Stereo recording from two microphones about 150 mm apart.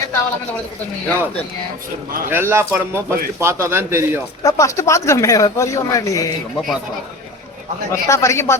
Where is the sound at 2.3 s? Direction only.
15° right (ahead or behind).